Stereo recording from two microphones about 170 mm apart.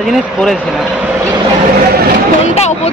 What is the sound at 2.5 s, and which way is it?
Speech, 40° left (ahead or behind).